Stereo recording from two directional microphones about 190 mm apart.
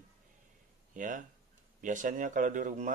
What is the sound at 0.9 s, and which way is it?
Speech, 45° right (ahead or behind).